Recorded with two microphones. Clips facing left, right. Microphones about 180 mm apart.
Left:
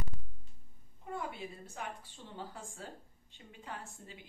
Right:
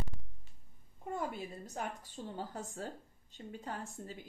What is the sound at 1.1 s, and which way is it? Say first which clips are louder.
A woman's voice: right 2 dB; 40° right (ahead or behind).